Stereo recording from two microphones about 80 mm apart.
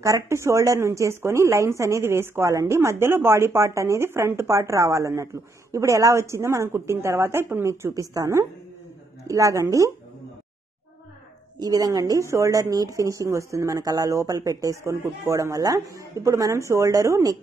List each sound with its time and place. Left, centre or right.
0.0 s a woman's voice: right
11.6 s a woman's voice: right